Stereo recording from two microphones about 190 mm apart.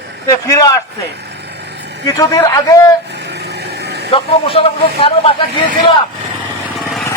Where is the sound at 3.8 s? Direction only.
60° right (ahead or behind).